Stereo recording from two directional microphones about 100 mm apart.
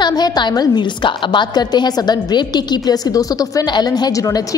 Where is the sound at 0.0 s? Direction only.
45° left (ahead or behind).